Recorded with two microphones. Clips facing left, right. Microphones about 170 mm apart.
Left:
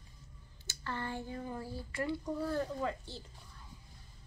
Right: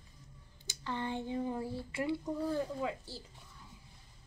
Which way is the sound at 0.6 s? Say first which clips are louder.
Right 2 dB; 15° right (ahead or behind).